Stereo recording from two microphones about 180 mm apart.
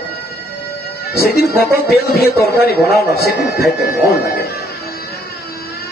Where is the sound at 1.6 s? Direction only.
60° left (ahead or behind).